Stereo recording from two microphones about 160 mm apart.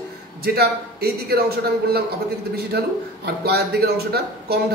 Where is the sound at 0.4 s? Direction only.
80° right.